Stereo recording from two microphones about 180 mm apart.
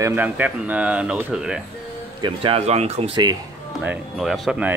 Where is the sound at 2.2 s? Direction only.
30° right (ahead or behind).